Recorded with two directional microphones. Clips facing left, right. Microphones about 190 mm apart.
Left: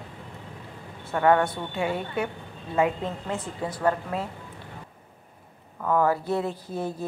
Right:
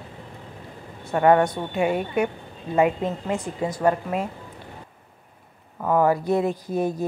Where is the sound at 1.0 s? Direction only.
20° right (ahead or behind).